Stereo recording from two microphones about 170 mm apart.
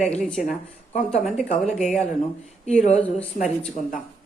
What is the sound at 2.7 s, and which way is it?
Speech, 40° left (ahead or behind).